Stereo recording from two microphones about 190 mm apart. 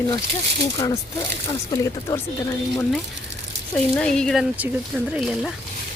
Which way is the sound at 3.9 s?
5° left (ahead or behind).